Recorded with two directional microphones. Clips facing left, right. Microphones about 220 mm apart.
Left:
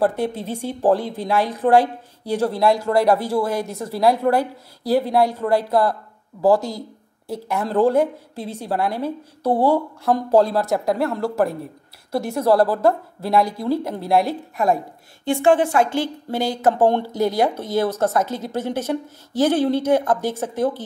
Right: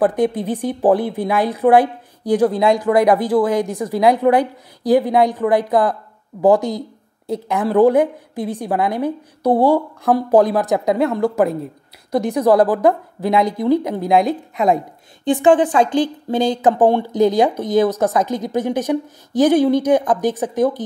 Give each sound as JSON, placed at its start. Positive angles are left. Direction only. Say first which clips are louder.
{"t": 0.0, "sound": "speech", "louder": "right 4 dB", "side_deg": -15}